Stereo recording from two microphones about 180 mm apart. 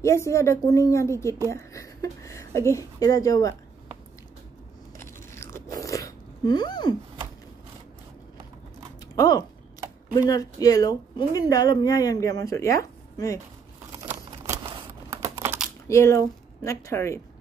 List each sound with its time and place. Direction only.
0.0 s a woman's voice: 15° left (ahead or behind)
4.9 s biting: 15° left (ahead or behind)
9.1 s speech: 20° left (ahead or behind)
15.0 s computer keyboard: 15° right (ahead or behind)
15.9 s a woman's voice: 15° left (ahead or behind)